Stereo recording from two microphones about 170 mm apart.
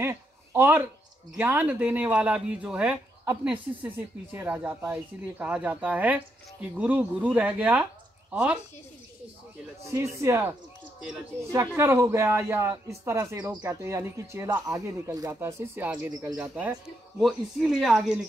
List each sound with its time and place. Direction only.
0.0 s a sound: 15° right (ahead or behind)
1.3 s a woman's voice: 10° right (ahead or behind)
9.9 s speech: 15° right (ahead or behind)
11.5 s speech: 15° right (ahead or behind)
16.1 s speech: 20° right (ahead or behind)
16.3 s speech: 5° right (ahead or behind)